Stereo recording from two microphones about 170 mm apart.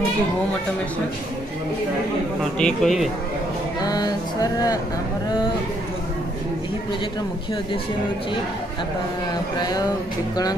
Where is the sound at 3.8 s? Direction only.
25° left (ahead or behind).